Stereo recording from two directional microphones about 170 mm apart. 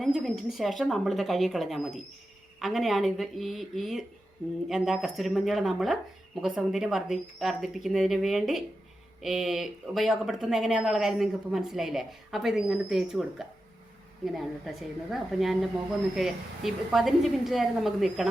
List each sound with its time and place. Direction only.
0.0 s speech: centre (ahead or behind)